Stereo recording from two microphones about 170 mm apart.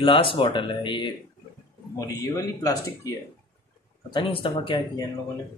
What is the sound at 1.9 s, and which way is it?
Speech, 20° left (ahead or behind).